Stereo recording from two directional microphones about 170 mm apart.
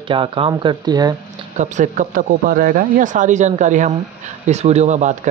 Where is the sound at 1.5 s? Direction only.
45° right (ahead or behind).